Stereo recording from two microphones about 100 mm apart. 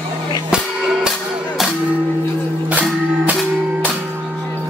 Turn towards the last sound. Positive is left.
turn(degrees=-15)  # may be behind; listen again after turning